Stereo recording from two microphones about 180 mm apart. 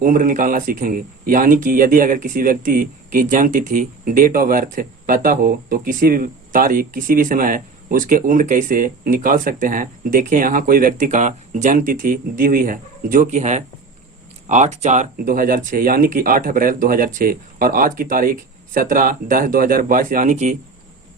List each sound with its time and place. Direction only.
0.0 s a man's voice: 50° right (ahead or behind)